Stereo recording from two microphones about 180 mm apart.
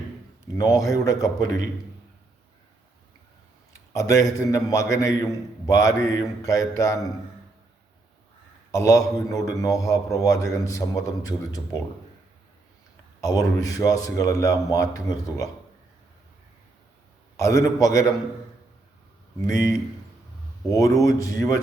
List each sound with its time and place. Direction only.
0.5 s a man's voice: 20° left (ahead or behind)
3.7 s a man's voice: 15° left (ahead or behind)
8.7 s a man's voice: 15° left (ahead or behind)
13.2 s a man's voice: 20° left (ahead or behind)
17.3 s a man's voice: 15° left (ahead or behind)
19.5 s a man's voice: 20° left (ahead or behind)